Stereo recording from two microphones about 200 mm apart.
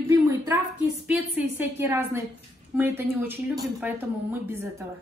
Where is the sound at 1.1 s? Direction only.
10° right (ahead or behind).